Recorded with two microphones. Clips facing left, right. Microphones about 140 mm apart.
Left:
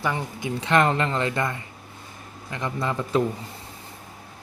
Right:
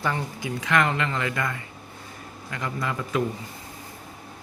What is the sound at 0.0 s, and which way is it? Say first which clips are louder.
Speech: left 1 dB; 20° left (ahead or behind).